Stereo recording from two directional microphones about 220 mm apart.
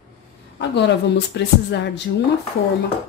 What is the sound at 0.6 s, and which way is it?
Speech, 50° left (ahead or behind).